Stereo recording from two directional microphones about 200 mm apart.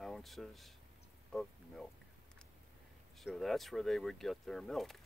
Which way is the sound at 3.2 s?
Centre (ahead or behind).